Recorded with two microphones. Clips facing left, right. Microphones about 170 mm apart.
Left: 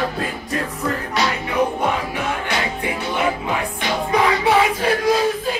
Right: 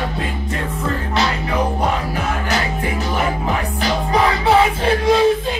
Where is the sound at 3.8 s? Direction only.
30° right (ahead or behind).